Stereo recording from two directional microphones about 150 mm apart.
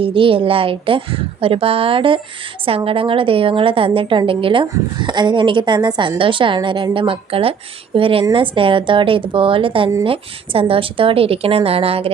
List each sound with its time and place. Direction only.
0.0 s a woman's voice: 35° right (ahead or behind)